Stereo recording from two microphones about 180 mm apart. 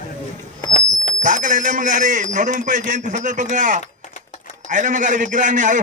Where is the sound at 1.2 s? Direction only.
45° right (ahead or behind).